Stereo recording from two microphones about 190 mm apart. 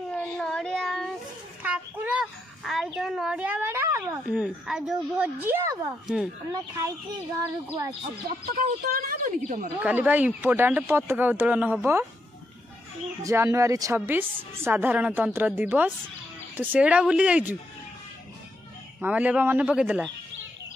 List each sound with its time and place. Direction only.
0.1 s child singing: 5° left (ahead or behind)
1.6 s a sound: 5° right (ahead or behind)
3.0 s a woman's voice: centre (ahead or behind)
8.5 s a woman's voice: 50° right (ahead or behind)
9.8 s a woman's voice: 10° right (ahead or behind)
13.2 s a woman's voice: 15° right (ahead or behind)
18.9 s a woman's voice: 10° right (ahead or behind)